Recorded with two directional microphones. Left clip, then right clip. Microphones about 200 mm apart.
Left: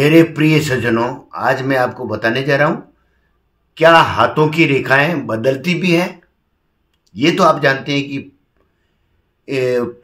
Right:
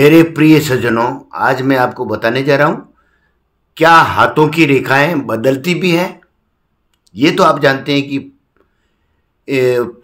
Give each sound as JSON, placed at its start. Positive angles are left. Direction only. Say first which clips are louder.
{"t": 0.0, "sound": "speech", "louder": "right 4 dB", "side_deg": -40}
{"t": 8.6, "sound": "a sound", "louder": "right 6 dB", "side_deg": -40}
{"t": 9.4, "sound": "speech", "louder": "right 4 dB", "side_deg": -40}